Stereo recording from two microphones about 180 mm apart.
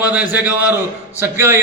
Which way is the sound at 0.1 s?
10° right (ahead or behind).